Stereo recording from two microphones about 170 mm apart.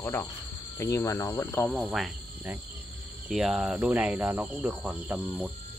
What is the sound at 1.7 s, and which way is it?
Speech, 5° right (ahead or behind).